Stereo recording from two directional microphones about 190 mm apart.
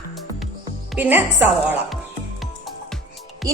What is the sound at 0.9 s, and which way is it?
A woman's voice, 10° right (ahead or behind).